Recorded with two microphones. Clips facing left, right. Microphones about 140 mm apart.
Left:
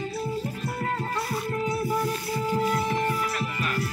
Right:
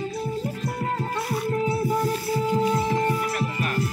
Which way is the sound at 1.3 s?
25° right (ahead or behind).